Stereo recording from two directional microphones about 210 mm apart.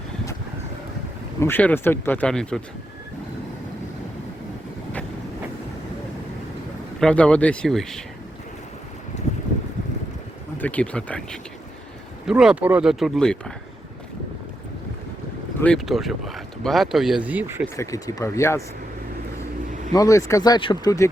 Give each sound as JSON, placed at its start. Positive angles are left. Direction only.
{"t": 1.4, "sound": "speech", "side_deg": 10}
{"t": 7.0, "sound": "speech", "side_deg": 5}
{"t": 9.1, "sound": "boat", "side_deg": 35}
{"t": 10.6, "sound": "speech", "side_deg": 5}
{"t": 15.6, "sound": "speech", "side_deg": 0}
{"t": 17.7, "sound": "speech", "side_deg": 15}
{"t": 19.9, "sound": "speech", "side_deg": 15}